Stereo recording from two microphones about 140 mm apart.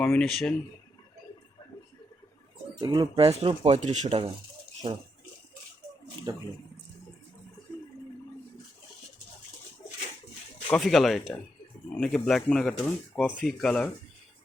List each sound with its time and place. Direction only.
0.0 s speech: 5° left (ahead or behind)
2.7 s speech: 35° right (ahead or behind)
4.8 s speech: 40° right (ahead or behind)
6.3 s speech: 30° right (ahead or behind)
10.7 s speech: centre (ahead or behind)